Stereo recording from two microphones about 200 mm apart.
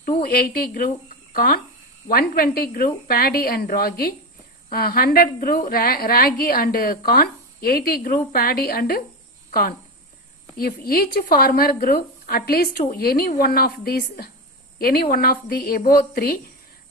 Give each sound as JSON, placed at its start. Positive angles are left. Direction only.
{"t": 0.2, "sound": "a woman's voice", "side_deg": 45}